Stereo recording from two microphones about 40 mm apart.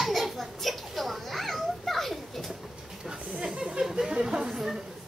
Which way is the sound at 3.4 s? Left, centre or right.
Centre.